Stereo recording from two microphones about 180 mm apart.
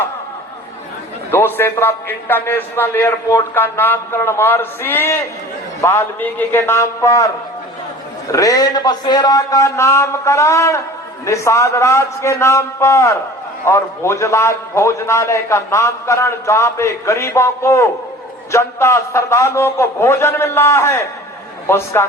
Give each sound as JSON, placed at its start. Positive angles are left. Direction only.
{"t": 1.3, "sound": "a man's voice", "side_deg": 10}
{"t": 8.3, "sound": "a man's voice", "side_deg": 20}